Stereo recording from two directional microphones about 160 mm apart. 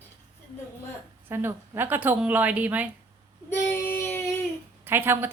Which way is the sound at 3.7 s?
15° left (ahead or behind).